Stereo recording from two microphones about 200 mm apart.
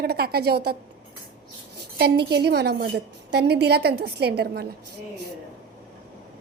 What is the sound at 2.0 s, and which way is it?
A woman's voice, 55° right (ahead or behind).